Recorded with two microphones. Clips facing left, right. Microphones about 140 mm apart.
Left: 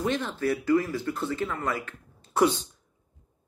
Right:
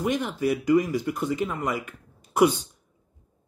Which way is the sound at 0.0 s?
15° right (ahead or behind).